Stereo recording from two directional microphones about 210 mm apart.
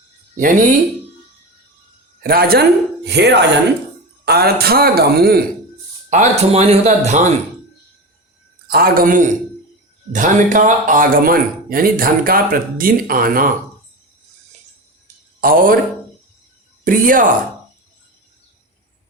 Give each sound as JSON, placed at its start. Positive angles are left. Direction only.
{"t": 0.3, "sound": "speech", "side_deg": -40}
{"t": 2.2, "sound": "speech", "side_deg": -45}
{"t": 6.1, "sound": "speech", "side_deg": -30}
{"t": 8.6, "sound": "speech", "side_deg": -45}
{"t": 15.0, "sound": "a sound", "side_deg": -40}
{"t": 16.8, "sound": "speech", "side_deg": -40}